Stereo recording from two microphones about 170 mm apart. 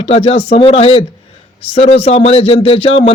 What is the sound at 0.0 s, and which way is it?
Speech, 35° left (ahead or behind).